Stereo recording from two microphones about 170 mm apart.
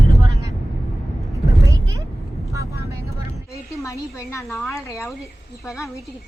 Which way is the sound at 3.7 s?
20° left (ahead or behind).